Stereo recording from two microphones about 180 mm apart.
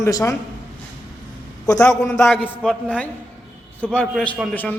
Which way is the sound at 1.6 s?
20° left (ahead or behind).